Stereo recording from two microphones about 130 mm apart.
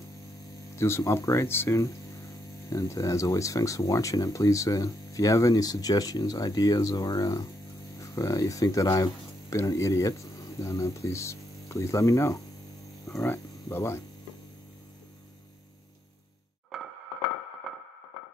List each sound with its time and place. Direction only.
0.7 s speech: 20° left (ahead or behind)
16.7 s a sound: centre (ahead or behind)
17.7 s music: centre (ahead or behind)